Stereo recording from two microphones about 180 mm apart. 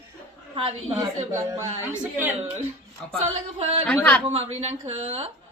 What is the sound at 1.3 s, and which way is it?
A woman's voice, 15° right (ahead or behind).